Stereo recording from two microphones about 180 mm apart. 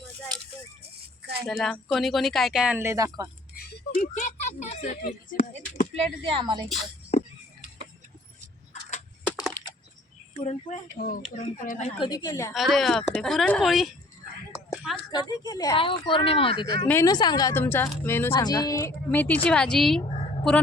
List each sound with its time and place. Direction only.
1.5 s speech: 5° left (ahead or behind)
2.7 s speech: 15° right (ahead or behind)
3.5 s a sound: 60° left (ahead or behind)
4.0 s speech: 45° left (ahead or behind)
5.9 s speech: 30° right (ahead or behind)
8.7 s a sound: 40° left (ahead or behind)
9.3 s a sound: 5° left (ahead or behind)
10.4 s speech: 40° left (ahead or behind)
11.3 s speech: 50° left (ahead or behind)
11.8 s speech: 30° left (ahead or behind)
12.5 s speech: centre (ahead or behind)
14.5 s a sound: centre (ahead or behind)
15.1 s speech: 20° left (ahead or behind); by 20.0 s 5° left (ahead or behind)